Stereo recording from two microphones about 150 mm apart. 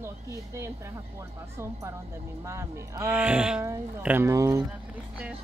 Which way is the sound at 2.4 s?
20° right (ahead or behind).